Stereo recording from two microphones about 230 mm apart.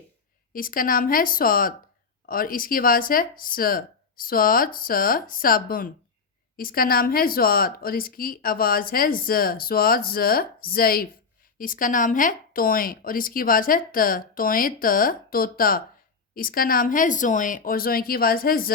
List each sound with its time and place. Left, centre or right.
0.5 s speech: left